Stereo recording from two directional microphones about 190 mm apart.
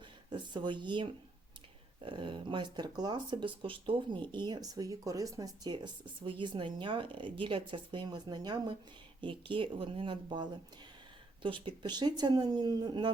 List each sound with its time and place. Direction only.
0.3 s speech: 25° right (ahead or behind)